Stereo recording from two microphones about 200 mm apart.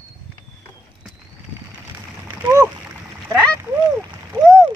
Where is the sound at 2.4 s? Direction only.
15° right (ahead or behind).